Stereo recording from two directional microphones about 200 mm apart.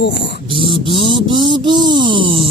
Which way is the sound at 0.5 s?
25° right (ahead or behind).